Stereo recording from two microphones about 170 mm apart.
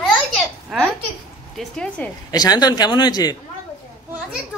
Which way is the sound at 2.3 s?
25° left (ahead or behind).